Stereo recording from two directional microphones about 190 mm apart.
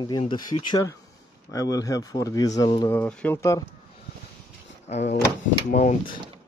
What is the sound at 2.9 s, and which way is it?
Speech, 10° left (ahead or behind).